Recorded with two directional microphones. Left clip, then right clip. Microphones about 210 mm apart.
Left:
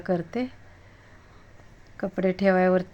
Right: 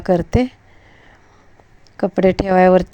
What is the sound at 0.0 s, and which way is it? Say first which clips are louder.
Speech: right 11 dB; 30° right (ahead or behind).